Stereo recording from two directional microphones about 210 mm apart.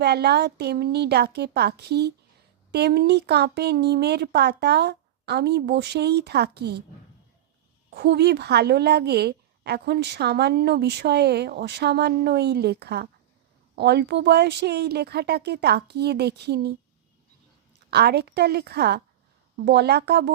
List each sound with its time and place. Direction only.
0.0 s a woman's voice: 50° right (ahead or behind)
7.9 s a woman's voice: 55° right (ahead or behind)
17.9 s a woman's voice: 50° right (ahead or behind)